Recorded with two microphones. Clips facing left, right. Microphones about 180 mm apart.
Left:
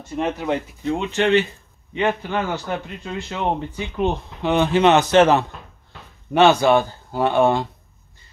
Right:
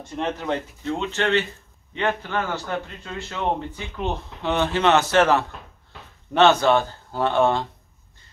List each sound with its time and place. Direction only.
0.0 s a man's voice: 10° left (ahead or behind)